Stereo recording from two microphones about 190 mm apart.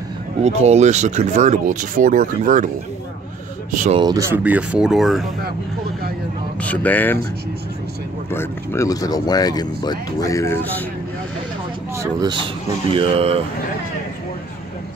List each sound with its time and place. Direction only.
0.4 s speech: 35° right (ahead or behind)
3.7 s speech: 40° right (ahead or behind)
4.0 s speech: 15° right (ahead or behind); by 5.2 s centre (ahead or behind)
6.6 s speech: 10° left (ahead or behind)
8.3 s speech: 15° left (ahead or behind)
11.9 s speech: 15° right (ahead or behind)
12.9 s speech: 30° right (ahead or behind)